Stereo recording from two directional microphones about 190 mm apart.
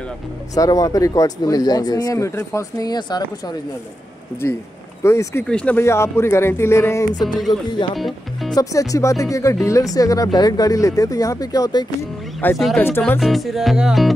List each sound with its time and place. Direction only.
0.6 s speech: 20° left (ahead or behind)
5.0 s speech: 15° left (ahead or behind)
7.9 s speech: centre (ahead or behind)
8.5 s speech: 15° left (ahead or behind)
12.4 s music: 5° left (ahead or behind)
12.8 s speech: 10° left (ahead or behind)
13.2 s music: centre (ahead or behind)